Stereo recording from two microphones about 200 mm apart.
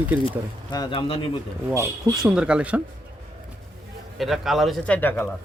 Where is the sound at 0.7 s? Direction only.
20° left (ahead or behind).